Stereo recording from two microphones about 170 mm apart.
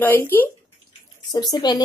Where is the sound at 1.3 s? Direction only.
25° left (ahead or behind).